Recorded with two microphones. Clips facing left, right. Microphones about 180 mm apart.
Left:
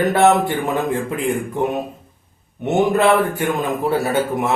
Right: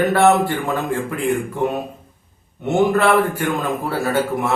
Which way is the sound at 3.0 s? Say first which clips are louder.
Left 1 dB; 20° left (ahead or behind).